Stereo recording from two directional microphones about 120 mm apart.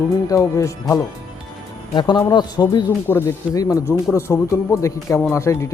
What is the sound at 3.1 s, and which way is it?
Speech, 20° left (ahead or behind).